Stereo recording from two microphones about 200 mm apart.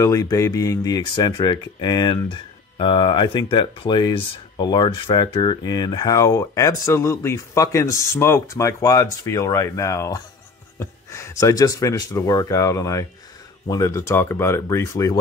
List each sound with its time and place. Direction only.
0.0 s speech: 20° left (ahead or behind)